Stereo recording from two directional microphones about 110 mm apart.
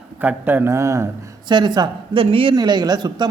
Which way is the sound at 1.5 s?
40° right (ahead or behind).